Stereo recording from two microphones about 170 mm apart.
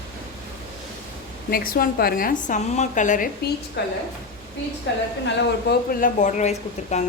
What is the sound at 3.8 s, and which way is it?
Speech, 80° left.